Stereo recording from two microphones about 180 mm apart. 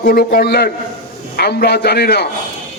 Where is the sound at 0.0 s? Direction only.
55° left (ahead or behind).